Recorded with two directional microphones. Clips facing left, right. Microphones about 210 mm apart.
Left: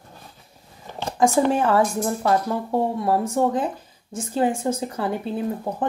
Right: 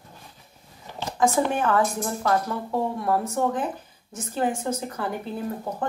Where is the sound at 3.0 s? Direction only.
25° left (ahead or behind).